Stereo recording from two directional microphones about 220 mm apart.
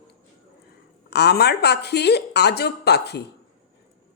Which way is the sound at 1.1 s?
50° left (ahead or behind).